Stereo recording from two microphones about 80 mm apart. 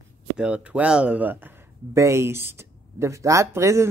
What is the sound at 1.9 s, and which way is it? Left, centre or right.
Speech, right.